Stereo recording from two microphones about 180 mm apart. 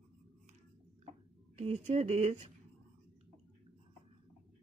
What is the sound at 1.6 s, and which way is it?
Speech, 40° right (ahead or behind).